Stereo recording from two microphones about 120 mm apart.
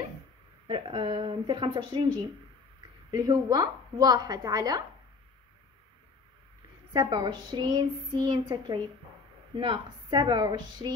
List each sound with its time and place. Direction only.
0.7 s speech: 45° right (ahead or behind)
3.1 s speech: 35° right (ahead or behind)
6.9 s speech: 35° right (ahead or behind)